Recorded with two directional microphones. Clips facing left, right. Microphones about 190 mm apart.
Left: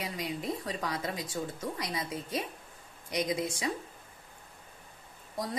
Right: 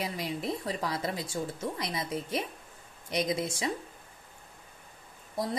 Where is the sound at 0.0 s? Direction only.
30° right (ahead or behind).